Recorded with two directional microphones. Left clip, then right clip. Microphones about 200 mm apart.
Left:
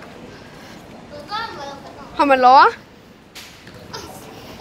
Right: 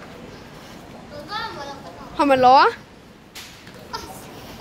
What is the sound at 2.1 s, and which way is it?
Speech, 15° right (ahead or behind).